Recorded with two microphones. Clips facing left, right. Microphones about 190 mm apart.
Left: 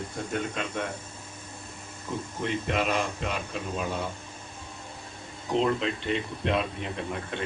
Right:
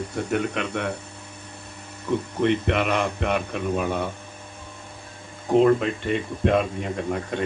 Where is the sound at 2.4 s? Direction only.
65° right (ahead or behind).